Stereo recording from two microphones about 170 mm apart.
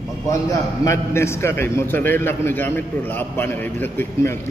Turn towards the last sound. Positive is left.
turn(degrees=15)  # may be behind; listen again after turning